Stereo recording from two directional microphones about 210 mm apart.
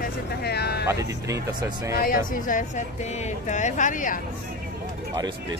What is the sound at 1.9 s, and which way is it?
Speech, 45° left (ahead or behind).